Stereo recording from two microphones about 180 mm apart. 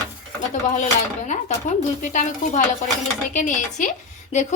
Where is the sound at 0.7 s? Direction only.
45° left (ahead or behind).